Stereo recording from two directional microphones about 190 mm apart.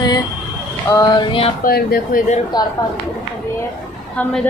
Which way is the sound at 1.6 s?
50° left (ahead or behind).